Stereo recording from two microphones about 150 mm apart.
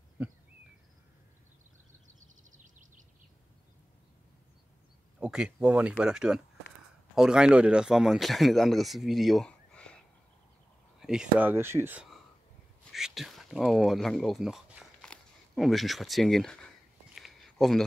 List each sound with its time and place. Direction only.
5.2 s speech: 5° right (ahead or behind)
11.0 s speech: 5° right (ahead or behind)
12.9 s speech: centre (ahead or behind)
15.0 s a sound: 5° left (ahead or behind)